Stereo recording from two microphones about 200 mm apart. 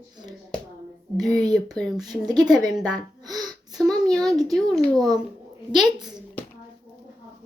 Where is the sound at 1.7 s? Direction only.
Centre (ahead or behind).